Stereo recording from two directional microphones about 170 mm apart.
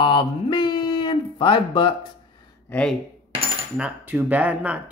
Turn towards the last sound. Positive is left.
turn(degrees=-5)  # may be behind; listen again after turning